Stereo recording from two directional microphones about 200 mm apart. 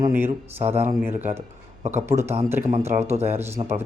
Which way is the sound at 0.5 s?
30° right (ahead or behind).